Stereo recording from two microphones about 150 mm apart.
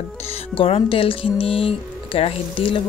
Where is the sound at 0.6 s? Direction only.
40° left (ahead or behind).